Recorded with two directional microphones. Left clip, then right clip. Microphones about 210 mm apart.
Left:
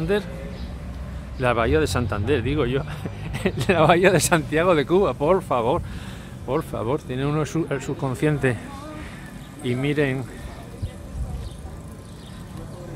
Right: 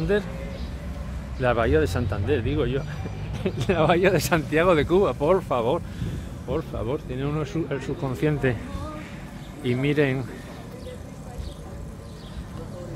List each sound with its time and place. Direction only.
1.4 s speech: 10° left (ahead or behind)
9.6 s speech: centre (ahead or behind)